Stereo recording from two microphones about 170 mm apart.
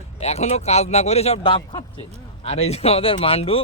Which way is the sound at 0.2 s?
40° left (ahead or behind).